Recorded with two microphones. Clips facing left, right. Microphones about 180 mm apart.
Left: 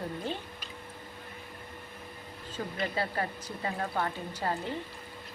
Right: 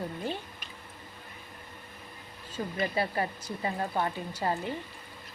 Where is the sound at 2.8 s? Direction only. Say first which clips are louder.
Right 3 dB; 15° right (ahead or behind).